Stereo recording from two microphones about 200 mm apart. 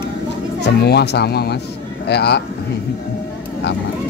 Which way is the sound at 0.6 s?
55° left (ahead or behind).